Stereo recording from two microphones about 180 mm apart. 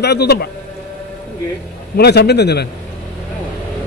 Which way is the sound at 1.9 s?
65° left (ahead or behind).